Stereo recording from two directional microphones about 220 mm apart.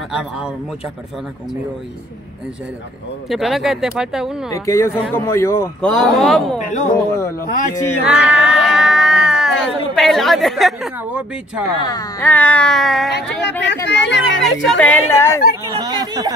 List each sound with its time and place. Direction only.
0.1 s a woman's voice: 5° right (ahead or behind)
3.3 s a woman's voice: centre (ahead or behind)
4.5 s a woman's voice: 15° left (ahead or behind)
6.7 s speech: 35° left (ahead or behind)
7.2 s speech: 10° left (ahead or behind)
8.0 s a sound: 5° right (ahead or behind)
9.7 s a woman's voice: centre (ahead or behind)
11.8 s speech: 15° left (ahead or behind); by 13.1 s centre (ahead or behind)
13.8 s speech: 55° left (ahead or behind)
14.4 s speech: 5° left (ahead or behind)
15.8 s chatter: 20° right (ahead or behind)